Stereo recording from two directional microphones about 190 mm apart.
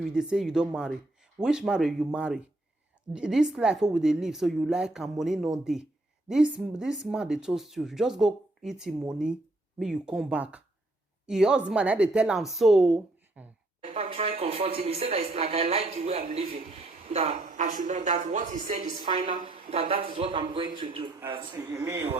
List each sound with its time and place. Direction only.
0.0 s speech: 5° right (ahead or behind)
13.8 s speech: 30° right (ahead or behind)
19.0 s speech: 25° right (ahead or behind)